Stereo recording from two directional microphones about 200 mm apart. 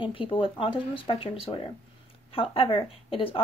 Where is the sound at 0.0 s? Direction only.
25° left (ahead or behind).